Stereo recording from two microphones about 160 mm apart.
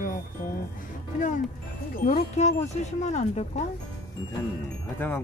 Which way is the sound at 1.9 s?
60° left (ahead or behind).